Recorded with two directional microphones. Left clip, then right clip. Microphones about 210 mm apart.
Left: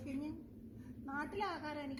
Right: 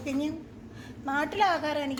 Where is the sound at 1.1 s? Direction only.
50° right (ahead or behind).